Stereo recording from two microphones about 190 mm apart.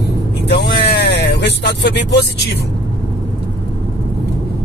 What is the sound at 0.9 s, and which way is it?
Speech, 60° left (ahead or behind).